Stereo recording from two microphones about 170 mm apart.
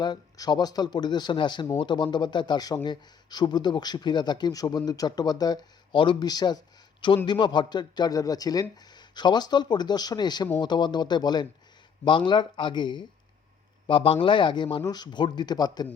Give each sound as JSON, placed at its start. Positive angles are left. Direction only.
{"t": 0.0, "sound": "speech", "side_deg": 25}